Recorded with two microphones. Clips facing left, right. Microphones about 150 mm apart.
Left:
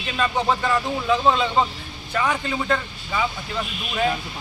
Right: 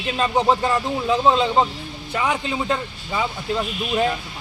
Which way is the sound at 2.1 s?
15° right (ahead or behind).